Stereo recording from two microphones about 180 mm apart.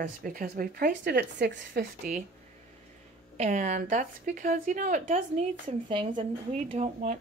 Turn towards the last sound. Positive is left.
turn(degrees=-40)  # may be behind; listen again after turning